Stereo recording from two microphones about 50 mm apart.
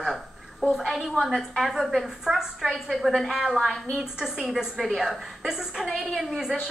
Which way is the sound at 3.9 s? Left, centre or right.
Centre.